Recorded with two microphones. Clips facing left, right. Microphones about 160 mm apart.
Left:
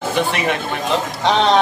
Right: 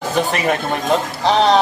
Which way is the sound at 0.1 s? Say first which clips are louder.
Right 2 dB; 40° right (ahead or behind).